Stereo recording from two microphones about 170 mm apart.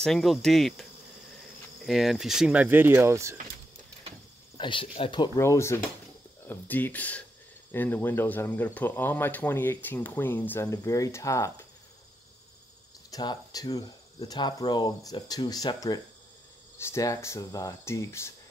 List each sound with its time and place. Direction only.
0.0 s cricket: centre (ahead or behind)
1.8 s speech: centre (ahead or behind)
4.6 s speech: 30° left (ahead or behind)
13.1 s speech: 25° left (ahead or behind)